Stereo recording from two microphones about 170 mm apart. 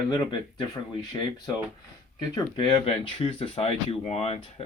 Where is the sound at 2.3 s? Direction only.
30° left (ahead or behind).